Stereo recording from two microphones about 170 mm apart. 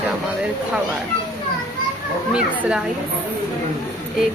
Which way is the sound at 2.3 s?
5° right (ahead or behind).